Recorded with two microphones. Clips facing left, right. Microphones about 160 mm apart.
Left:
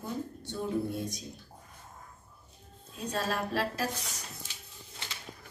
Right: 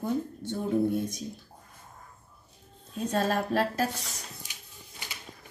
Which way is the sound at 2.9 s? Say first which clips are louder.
Right 6 dB; 50° right (ahead or behind).